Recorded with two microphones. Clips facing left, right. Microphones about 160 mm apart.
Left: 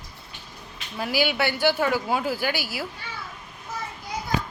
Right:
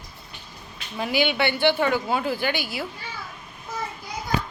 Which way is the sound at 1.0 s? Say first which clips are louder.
Right 1 dB; 5° left (ahead or behind).